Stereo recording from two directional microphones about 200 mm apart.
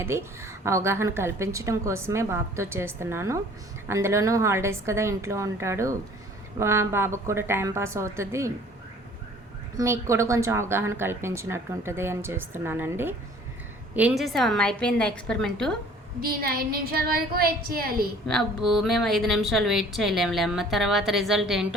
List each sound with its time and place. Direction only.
0.0 s a woman's voice: 15° right (ahead or behind)
9.7 s a woman's voice: 15° right (ahead or behind); by 15.7 s 5° left (ahead or behind)
16.2 s a woman's voice: 50° right (ahead or behind)
18.3 s a woman's voice: centre (ahead or behind)